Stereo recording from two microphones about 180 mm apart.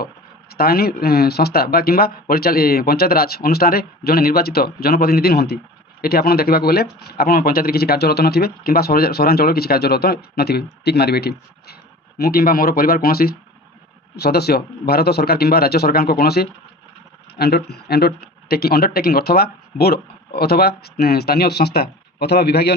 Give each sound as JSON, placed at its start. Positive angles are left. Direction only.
{"t": 0.5, "sound": "speech", "side_deg": 60}